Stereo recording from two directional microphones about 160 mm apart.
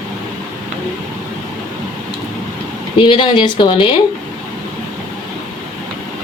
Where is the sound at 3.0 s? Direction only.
30° left (ahead or behind).